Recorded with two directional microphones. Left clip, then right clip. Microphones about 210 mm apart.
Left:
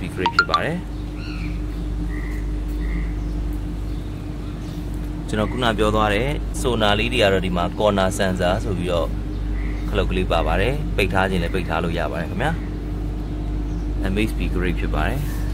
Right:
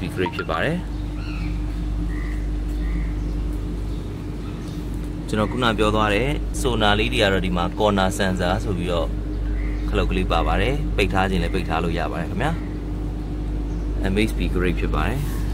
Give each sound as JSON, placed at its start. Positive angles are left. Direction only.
{"t": 0.5, "sound": "speech", "side_deg": -15}
{"t": 5.3, "sound": "speech", "side_deg": 0}
{"t": 14.0, "sound": "speech", "side_deg": -5}